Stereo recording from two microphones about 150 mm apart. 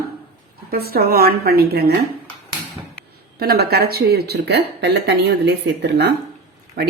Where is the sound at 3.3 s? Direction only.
90° right.